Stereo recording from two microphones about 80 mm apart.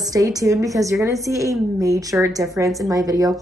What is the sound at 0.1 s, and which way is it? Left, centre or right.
A woman's voice, right.